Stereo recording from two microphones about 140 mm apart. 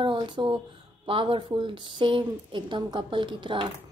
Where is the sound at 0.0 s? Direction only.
35° right (ahead or behind).